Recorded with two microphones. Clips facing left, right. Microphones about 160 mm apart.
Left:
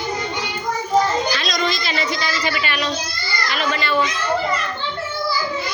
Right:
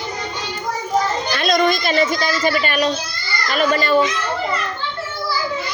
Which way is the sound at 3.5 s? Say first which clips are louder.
Right 6 dB; 45° right (ahead or behind).